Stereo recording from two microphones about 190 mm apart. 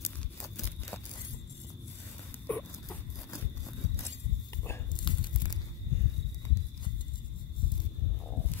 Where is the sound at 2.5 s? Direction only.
10° left (ahead or behind).